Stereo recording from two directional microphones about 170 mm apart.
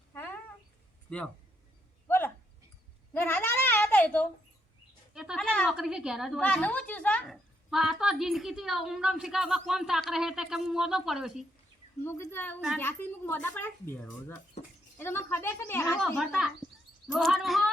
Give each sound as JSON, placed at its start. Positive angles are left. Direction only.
{"t": 0.1, "sound": "a sound", "side_deg": 10}
{"t": 2.0, "sound": "a sound", "side_deg": 15}
{"t": 5.1, "sound": "a woman's voice", "side_deg": 0}
{"t": 12.0, "sound": "a woman's voice", "side_deg": 15}
{"t": 14.6, "sound": "speech", "side_deg": 40}
{"t": 14.9, "sound": "a woman's voice", "side_deg": 15}